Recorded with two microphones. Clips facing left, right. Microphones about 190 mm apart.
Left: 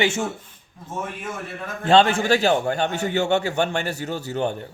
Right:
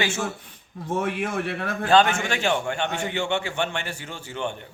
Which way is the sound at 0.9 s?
75° right (ahead or behind).